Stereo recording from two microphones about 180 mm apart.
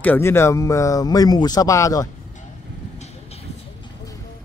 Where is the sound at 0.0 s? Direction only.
10° left (ahead or behind).